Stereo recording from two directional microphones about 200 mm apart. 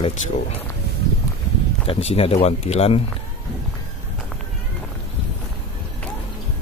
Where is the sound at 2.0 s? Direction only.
30° left (ahead or behind).